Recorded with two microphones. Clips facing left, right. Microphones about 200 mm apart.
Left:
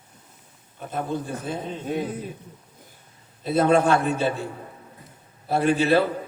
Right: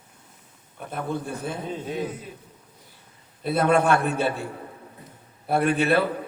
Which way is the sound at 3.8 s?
60° right (ahead or behind).